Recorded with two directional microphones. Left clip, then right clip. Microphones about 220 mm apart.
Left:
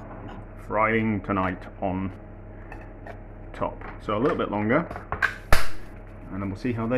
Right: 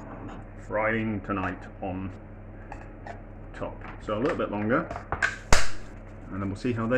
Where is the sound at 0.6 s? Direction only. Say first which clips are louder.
Left 4 dB; 40° left (ahead or behind).